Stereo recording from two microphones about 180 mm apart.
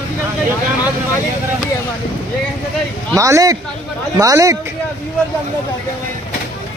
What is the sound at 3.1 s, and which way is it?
Speech, 20° right (ahead or behind).